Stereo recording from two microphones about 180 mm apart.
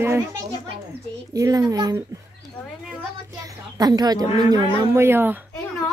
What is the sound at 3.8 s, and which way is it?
A child's voice, 20° right (ahead or behind).